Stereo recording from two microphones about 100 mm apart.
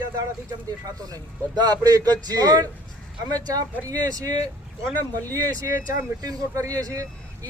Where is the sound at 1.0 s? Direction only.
40° right (ahead or behind).